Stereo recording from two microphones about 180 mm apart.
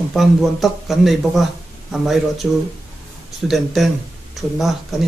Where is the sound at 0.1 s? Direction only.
Centre (ahead or behind).